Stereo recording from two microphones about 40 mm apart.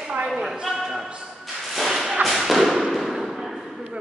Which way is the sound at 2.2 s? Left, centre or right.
Centre.